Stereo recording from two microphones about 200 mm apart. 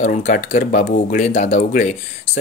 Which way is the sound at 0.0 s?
40° left (ahead or behind).